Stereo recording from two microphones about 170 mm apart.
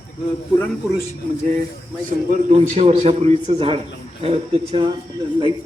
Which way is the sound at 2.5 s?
35° right (ahead or behind).